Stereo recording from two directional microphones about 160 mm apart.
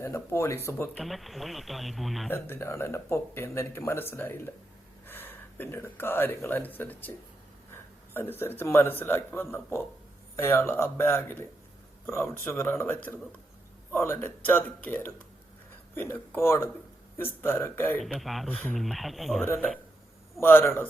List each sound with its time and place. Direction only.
0.0 s speech: 15° left (ahead or behind)
1.0 s speech: centre (ahead or behind)
2.3 s a man's voice: 15° left (ahead or behind)
18.0 s speech: centre (ahead or behind)
19.4 s speech: 10° left (ahead or behind)